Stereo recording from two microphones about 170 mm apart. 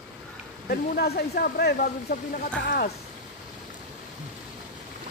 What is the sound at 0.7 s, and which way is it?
Speech, 65° left (ahead or behind).